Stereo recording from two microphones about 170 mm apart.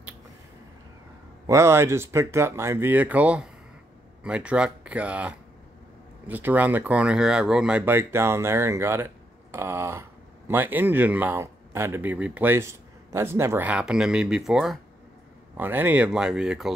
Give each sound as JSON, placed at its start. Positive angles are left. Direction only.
{"t": 1.5, "sound": "speech", "side_deg": -15}